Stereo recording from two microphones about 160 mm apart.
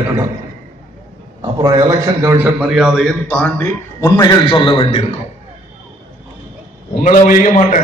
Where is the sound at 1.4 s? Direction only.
25° right (ahead or behind).